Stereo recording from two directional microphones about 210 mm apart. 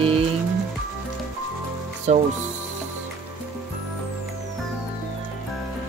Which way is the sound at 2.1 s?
35° right (ahead or behind).